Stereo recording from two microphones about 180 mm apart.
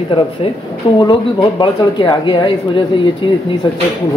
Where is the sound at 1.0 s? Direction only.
25° left (ahead or behind).